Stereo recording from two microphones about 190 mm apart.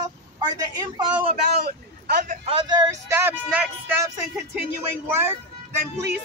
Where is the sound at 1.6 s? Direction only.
55° right (ahead or behind).